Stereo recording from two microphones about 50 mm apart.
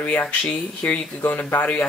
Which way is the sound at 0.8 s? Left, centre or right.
Left.